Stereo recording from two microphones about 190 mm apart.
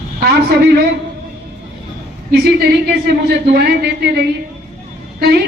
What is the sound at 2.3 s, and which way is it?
Speech, 55° right (ahead or behind).